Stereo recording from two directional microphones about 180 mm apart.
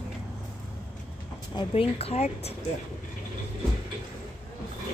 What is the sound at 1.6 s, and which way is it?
Speech, 30° left (ahead or behind).